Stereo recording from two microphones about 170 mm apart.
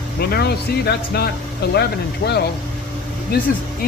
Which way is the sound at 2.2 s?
80° left.